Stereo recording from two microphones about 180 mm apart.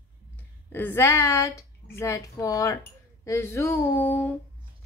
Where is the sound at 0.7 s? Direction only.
10° left (ahead or behind).